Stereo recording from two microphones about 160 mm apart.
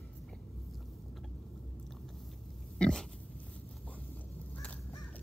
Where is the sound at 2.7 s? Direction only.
5° left (ahead or behind).